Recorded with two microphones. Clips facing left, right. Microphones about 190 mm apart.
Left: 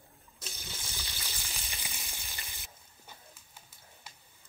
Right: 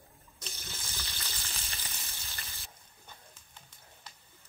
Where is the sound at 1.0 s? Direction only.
10° left (ahead or behind).